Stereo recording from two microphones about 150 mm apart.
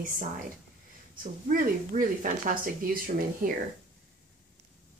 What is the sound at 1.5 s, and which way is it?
Speech, 65° right (ahead or behind).